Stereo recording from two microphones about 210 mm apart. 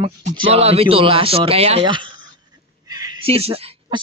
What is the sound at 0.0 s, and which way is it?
A woman's voice, 25° right (ahead or behind).